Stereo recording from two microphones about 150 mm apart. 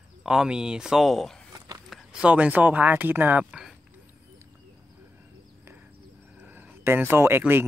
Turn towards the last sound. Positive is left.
turn(degrees=-15)  # may be behind; listen again after turning